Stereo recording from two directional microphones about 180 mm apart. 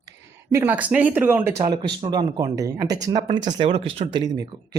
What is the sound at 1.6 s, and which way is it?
Speech, 25° right (ahead or behind).